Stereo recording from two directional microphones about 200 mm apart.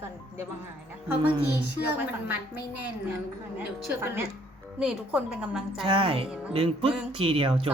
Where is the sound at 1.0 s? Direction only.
5° right (ahead or behind).